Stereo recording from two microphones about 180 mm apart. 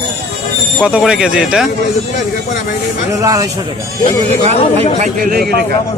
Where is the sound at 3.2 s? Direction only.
20° right (ahead or behind).